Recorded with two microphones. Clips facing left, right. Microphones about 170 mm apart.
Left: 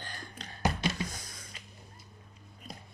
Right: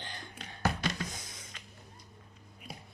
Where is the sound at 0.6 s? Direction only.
15° left (ahead or behind).